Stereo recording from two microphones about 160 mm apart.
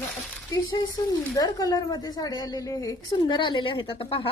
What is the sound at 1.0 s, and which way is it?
A woman's voice, 20° left (ahead or behind).